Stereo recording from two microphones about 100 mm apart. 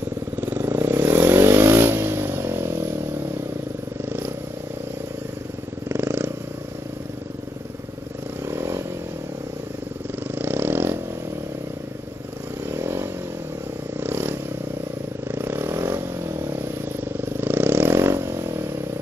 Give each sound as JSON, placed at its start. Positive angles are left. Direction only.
{"t": 0.4, "sound": "vehicle", "side_deg": -20}
{"t": 4.0, "sound": "vehicle", "side_deg": -20}
{"t": 5.9, "sound": "purr", "side_deg": -25}
{"t": 8.5, "sound": "vehicle", "side_deg": -25}
{"t": 10.4, "sound": "vehicle", "side_deg": -20}
{"t": 12.7, "sound": "motorcycle", "side_deg": -25}
{"t": 13.9, "sound": "vehicle", "side_deg": -25}
{"t": 17.2, "sound": "vehicle", "side_deg": -20}